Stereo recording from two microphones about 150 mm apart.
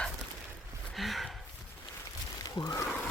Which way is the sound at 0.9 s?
Centre (ahead or behind).